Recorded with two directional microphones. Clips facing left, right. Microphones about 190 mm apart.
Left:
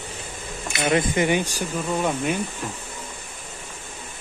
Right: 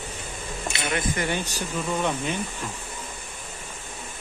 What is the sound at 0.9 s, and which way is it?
Speech, 25° left (ahead or behind).